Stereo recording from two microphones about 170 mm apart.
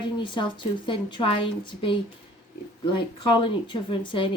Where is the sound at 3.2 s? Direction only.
30° left (ahead or behind).